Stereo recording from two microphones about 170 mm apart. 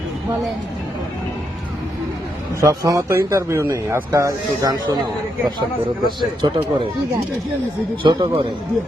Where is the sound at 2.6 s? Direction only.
20° right (ahead or behind).